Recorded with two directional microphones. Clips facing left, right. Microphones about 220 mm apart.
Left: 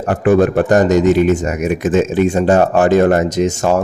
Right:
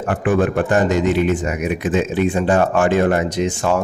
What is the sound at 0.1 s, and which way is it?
Speech, 40° left (ahead or behind).